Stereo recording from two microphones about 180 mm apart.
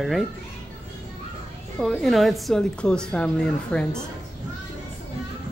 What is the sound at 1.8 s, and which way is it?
A woman's voice, centre (ahead or behind).